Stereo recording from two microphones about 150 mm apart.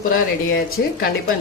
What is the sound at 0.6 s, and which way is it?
Speech, 90° left.